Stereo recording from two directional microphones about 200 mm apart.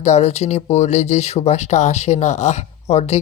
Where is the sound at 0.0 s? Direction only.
35° left (ahead or behind).